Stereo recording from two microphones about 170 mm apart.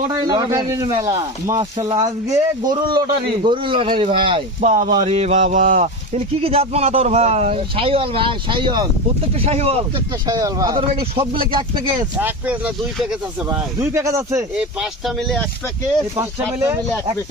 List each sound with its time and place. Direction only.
0.1 s speech: 25° right (ahead or behind)
1.5 s speech: 30° right (ahead or behind)
2.0 s speech: 20° right (ahead or behind)
4.6 s speech: 45° right (ahead or behind); by 8.9 s 25° right (ahead or behind)
9.4 s speech: 35° right (ahead or behind)
10.2 s speech: 20° right (ahead or behind)
12.2 s speech: 10° right (ahead or behind)
13.9 s speech: 15° right (ahead or behind)
14.5 s speech: 5° right (ahead or behind)
16.1 s speech: 15° right (ahead or behind)